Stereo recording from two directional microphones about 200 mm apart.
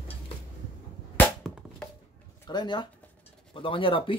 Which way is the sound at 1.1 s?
5° left (ahead or behind).